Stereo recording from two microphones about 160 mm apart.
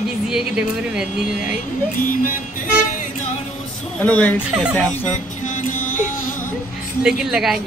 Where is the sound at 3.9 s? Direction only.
10° left (ahead or behind).